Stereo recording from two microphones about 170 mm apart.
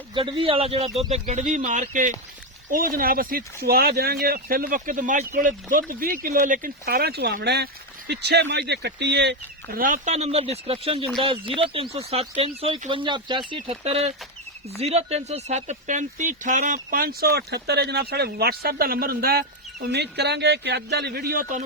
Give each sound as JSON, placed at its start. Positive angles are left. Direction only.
{"t": 0.1, "sound": "speech", "side_deg": -30}
{"t": 9.8, "sound": "speech", "side_deg": -45}